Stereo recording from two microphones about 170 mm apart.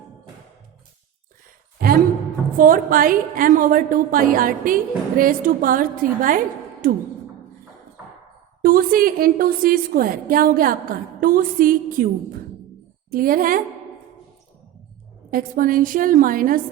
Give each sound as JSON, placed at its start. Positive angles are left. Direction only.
{"t": 2.6, "sound": "a woman's voice", "side_deg": -55}
{"t": 8.6, "sound": "a woman's voice", "side_deg": -60}
{"t": 15.3, "sound": "a woman's voice", "side_deg": -55}